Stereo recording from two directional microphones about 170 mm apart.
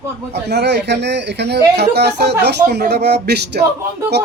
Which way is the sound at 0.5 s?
80° right.